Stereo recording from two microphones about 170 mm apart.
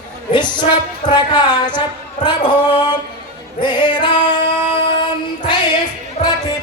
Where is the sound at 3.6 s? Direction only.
25° left (ahead or behind).